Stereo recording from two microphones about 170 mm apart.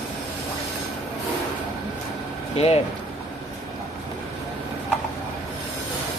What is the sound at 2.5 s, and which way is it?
Speech, 35° left (ahead or behind).